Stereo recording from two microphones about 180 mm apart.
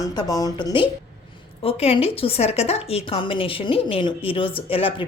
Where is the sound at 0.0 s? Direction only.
20° left (ahead or behind).